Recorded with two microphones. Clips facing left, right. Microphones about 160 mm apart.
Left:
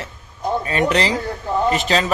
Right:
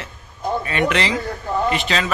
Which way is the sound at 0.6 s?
35° left (ahead or behind).